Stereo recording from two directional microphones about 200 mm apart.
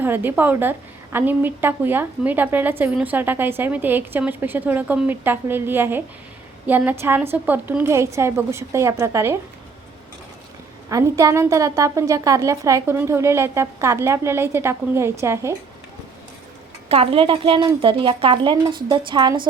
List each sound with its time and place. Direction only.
0.0 s a woman's voice: 10° right (ahead or behind)
10.8 s a woman's voice: 15° right (ahead or behind)
16.9 s a woman's voice: 30° right (ahead or behind)